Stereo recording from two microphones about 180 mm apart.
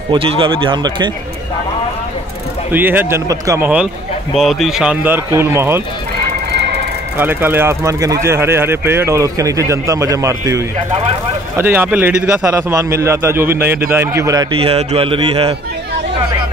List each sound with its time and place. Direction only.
0.1 s speech: 30° right (ahead or behind)
2.7 s speech: 10° right (ahead or behind)
7.2 s speech: 10° right (ahead or behind); by 15.5 s 30° right (ahead or behind)